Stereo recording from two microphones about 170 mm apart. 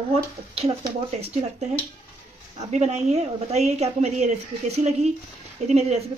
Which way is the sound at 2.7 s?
40° right (ahead or behind).